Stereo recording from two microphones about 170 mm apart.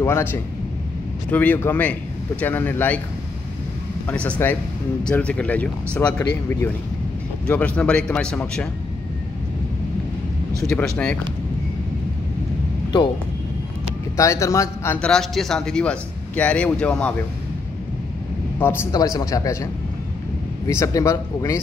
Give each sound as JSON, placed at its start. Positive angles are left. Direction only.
{"t": 0.0, "sound": "speech", "side_deg": 15}
{"t": 4.1, "sound": "speech", "side_deg": 5}
{"t": 10.7, "sound": "speech", "side_deg": 5}
{"t": 14.1, "sound": "speech", "side_deg": 20}
{"t": 18.6, "sound": "a man's voice", "side_deg": 15}